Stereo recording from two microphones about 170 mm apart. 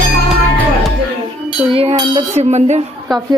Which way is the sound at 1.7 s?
35° right (ahead or behind).